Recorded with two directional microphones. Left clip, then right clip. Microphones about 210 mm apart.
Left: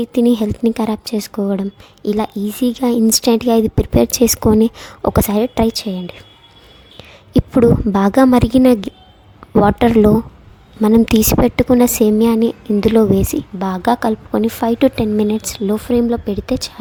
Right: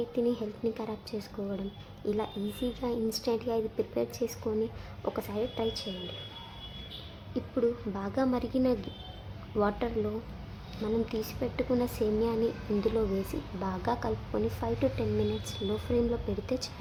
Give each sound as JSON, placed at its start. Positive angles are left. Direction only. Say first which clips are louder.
{"t": 0.0, "sound": "speech", "louder": "left 15 dB", "side_deg": 50}
{"t": 7.3, "sound": "a woman's voice", "louder": "left 18 dB", "side_deg": 60}